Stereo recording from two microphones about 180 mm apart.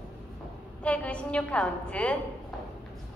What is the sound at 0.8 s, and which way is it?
A woman's voice, 5° left (ahead or behind).